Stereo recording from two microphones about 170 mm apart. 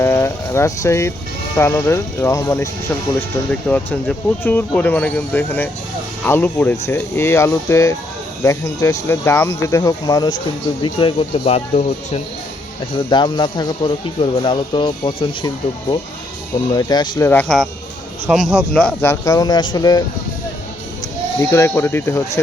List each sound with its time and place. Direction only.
0.0 s speech: 15° left (ahead or behind)
3.7 s speech: 10° left (ahead or behind); by 12.2 s 40° left (ahead or behind)
13.1 s speech: 25° left (ahead or behind)
17.2 s speech: 10° left (ahead or behind)
18.3 s speech: centre (ahead or behind)
19.1 s speech: 20° left (ahead or behind)
21.5 s speech: 15° left (ahead or behind)